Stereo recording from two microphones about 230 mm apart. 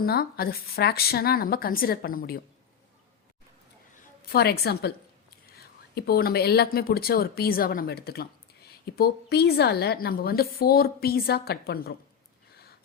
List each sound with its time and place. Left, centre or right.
0.0 s a woman's voice: left
4.3 s speech: left